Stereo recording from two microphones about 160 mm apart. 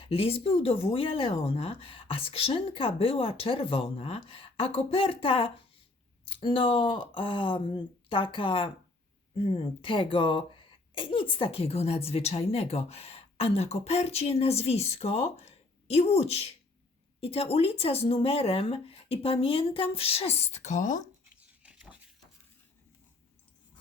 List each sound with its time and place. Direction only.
0.0 s speech: 35° left (ahead or behind); by 21.0 s 50° left (ahead or behind)
21.6 s pig: 5° right (ahead or behind)